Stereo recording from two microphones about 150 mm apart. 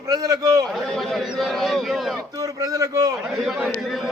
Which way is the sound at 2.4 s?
25° right (ahead or behind).